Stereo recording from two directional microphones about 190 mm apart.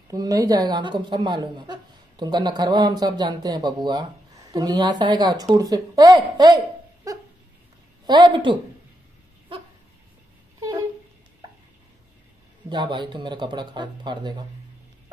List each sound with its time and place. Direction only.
0.1 s a woman's voice: 20° right (ahead or behind)
8.1 s a woman's voice: 25° right (ahead or behind)
12.6 s a woman's voice: 25° right (ahead or behind)